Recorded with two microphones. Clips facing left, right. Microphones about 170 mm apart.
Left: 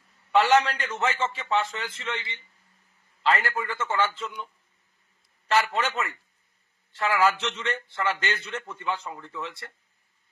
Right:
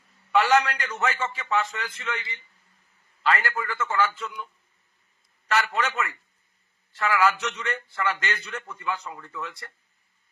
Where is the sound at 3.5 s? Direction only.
25° left (ahead or behind).